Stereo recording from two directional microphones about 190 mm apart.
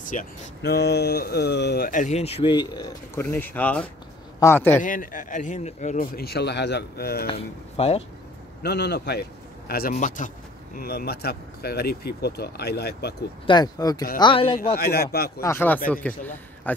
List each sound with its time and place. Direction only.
0.0 s speech: 45° left (ahead or behind)
0.6 s a man's voice: 60° left (ahead or behind); by 4.8 s 10° left (ahead or behind)
4.8 s speech: 45° left (ahead or behind)
7.2 s speech: 30° left (ahead or behind)
8.6 s a man's voice: 60° left (ahead or behind)
13.5 s speech: 20° left (ahead or behind)
14.8 s a man's voice: 55° left (ahead or behind)
15.4 s a man's voice: 10° left (ahead or behind)